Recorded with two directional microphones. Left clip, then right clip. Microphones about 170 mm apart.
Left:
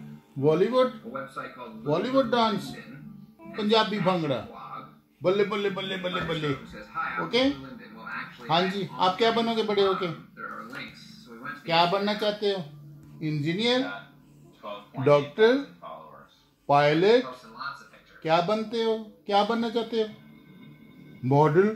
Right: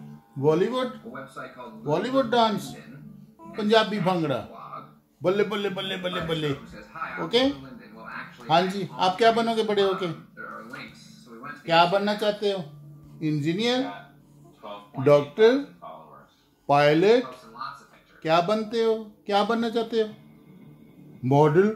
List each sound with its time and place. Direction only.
0.4 s speech: 15° right (ahead or behind)
1.9 s a man's voice: 15° right (ahead or behind)
8.5 s a man's voice: 20° right (ahead or behind)
11.6 s speech: 20° right (ahead or behind)
15.0 s speech: 10° right (ahead or behind)
16.6 s speech: 10° right (ahead or behind)
18.2 s speech: 10° right (ahead or behind)
21.2 s speech: 5° right (ahead or behind)